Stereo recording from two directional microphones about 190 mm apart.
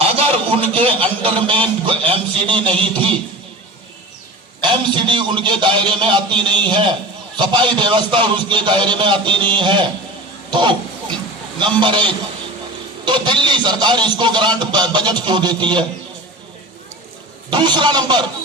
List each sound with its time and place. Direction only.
0.5 s a man's voice: 30° right (ahead or behind)
4.6 s a man's voice: 25° right (ahead or behind)
17.5 s a man's voice: 25° right (ahead or behind)